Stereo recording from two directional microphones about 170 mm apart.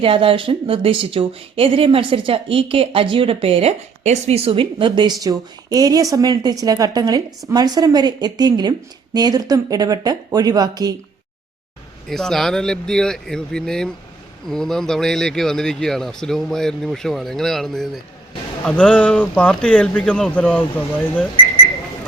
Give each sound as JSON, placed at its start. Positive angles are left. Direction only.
{"t": 0.0, "sound": "a woman's voice", "side_deg": -30}
{"t": 12.0, "sound": "speech", "side_deg": 0}